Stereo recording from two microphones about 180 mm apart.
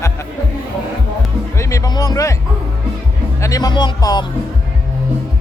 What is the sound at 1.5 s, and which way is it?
Music, 20° left (ahead or behind).